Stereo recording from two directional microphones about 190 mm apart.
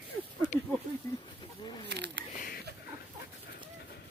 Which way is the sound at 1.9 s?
60° right (ahead or behind).